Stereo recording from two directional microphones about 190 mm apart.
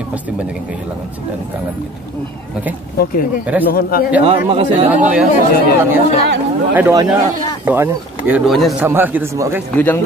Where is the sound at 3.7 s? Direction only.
50° left (ahead or behind).